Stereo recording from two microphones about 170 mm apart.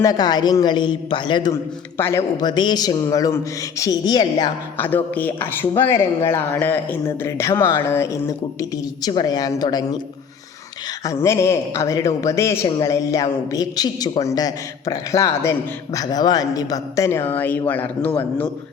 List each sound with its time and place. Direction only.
0.0 s a man's voice: 25° left (ahead or behind)
2.0 s a man's voice: 15° left (ahead or behind)
4.8 s speech: 10° left (ahead or behind)
11.0 s a man's voice: 15° left (ahead or behind)